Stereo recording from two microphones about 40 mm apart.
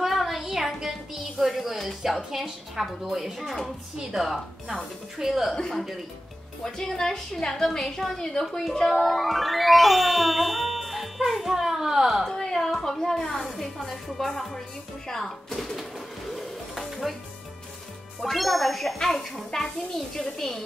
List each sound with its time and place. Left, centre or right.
0.0 s music: centre
2.4 s a woman's voice: centre
3.6 s music: centre
5.2 s a woman's voice: centre
5.5 s a woman's voice: centre
9.0 s music: centre
12.3 s a woman's voice: centre
18.2 s music: centre
18.9 s a woman's voice: centre